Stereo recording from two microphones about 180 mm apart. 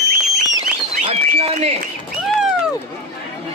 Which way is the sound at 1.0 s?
35° right (ahead or behind).